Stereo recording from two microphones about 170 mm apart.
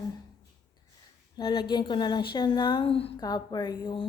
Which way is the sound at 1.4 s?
25° left (ahead or behind).